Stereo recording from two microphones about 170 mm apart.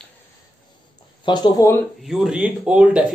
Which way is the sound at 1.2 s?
25° left (ahead or behind).